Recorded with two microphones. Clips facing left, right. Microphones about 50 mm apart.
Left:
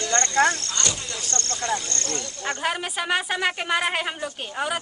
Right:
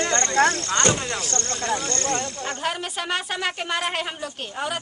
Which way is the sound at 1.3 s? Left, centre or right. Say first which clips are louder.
Left 2 dB; right.